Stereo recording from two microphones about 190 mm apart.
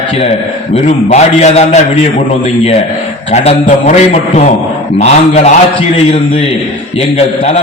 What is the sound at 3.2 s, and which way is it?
A man's voice, 30° left (ahead or behind).